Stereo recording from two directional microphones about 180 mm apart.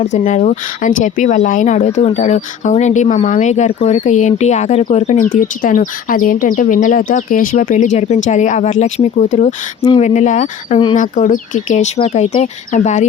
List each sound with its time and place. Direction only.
0.0 s speech: 40° left (ahead or behind)